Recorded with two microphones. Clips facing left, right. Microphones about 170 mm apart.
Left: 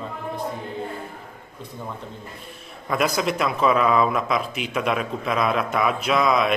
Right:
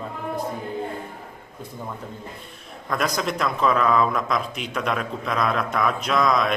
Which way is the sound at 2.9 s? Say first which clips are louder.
Left 2 dB; 5° left (ahead or behind).